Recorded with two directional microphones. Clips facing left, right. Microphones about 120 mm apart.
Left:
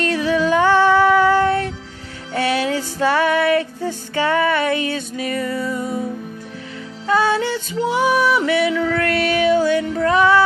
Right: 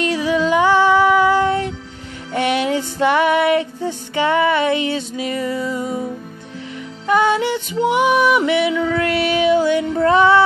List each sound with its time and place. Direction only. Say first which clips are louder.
0.0 s music: even; 15° right (ahead or behind)
2.3 s female singing: right 1 dB; 20° right (ahead or behind)
7.1 s music: right 2 dB; 20° right (ahead or behind)